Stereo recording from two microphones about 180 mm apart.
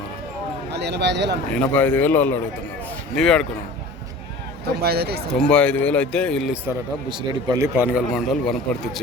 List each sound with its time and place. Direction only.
0.7 s speech: 70° right (ahead or behind)
1.5 s a man's voice: 10° left (ahead or behind)
4.6 s speech: 60° right (ahead or behind)
5.3 s a man's voice: 5° left (ahead or behind)
7.1 s speech: 25° right (ahead or behind)
7.9 s a man's voice: centre (ahead or behind)